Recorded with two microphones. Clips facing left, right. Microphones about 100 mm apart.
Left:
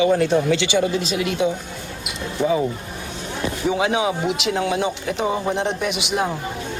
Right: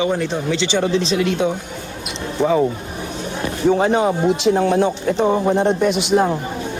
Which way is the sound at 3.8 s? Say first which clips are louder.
Right 4 dB; 5° left (ahead or behind).